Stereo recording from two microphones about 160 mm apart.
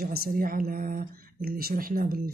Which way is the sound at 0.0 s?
70° right (ahead or behind).